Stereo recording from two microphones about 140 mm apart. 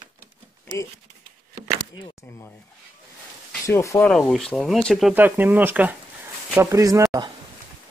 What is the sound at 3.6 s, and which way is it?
Speech, 20° left (ahead or behind).